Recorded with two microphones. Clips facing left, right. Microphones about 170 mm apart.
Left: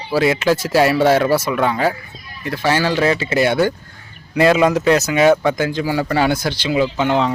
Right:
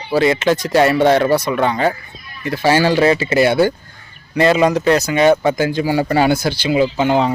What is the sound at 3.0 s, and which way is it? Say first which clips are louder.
Speech: right 3 dB; 35° right (ahead or behind).